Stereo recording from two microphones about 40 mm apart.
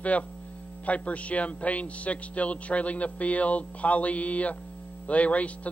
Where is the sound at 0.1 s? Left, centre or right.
Left.